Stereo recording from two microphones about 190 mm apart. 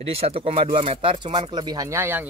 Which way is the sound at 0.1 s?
30° right (ahead or behind).